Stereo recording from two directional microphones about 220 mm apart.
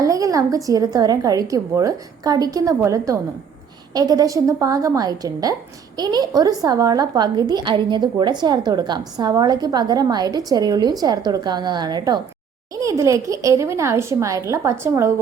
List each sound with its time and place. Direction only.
0.0 s a woman's voice: 15° right (ahead or behind)